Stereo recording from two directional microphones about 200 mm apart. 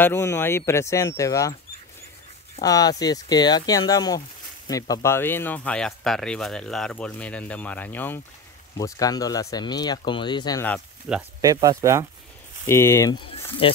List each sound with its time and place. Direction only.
0.0 s speech: 10° left (ahead or behind)
2.6 s speech: 20° left (ahead or behind)
11.1 s speech: 5° right (ahead or behind)
11.4 s speech: 20° right (ahead or behind)
12.6 s speech: 15° left (ahead or behind)
13.6 s speech: 25° left (ahead or behind)